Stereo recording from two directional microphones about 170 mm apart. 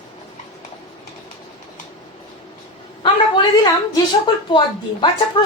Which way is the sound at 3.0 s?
25° left (ahead or behind).